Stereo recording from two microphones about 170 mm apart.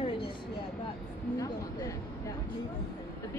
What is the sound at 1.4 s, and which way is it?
Speech, 20° left (ahead or behind).